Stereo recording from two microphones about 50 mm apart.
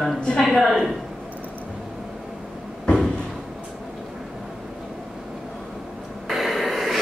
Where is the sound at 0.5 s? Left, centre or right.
Centre.